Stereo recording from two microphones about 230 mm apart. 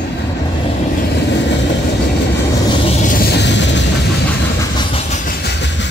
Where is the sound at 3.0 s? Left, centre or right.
Left.